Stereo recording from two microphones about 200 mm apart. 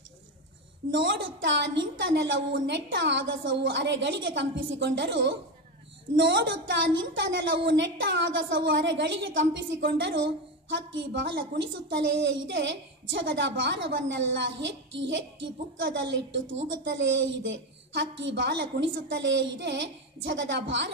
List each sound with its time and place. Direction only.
0.9 s a woman's voice: 65° right (ahead or behind)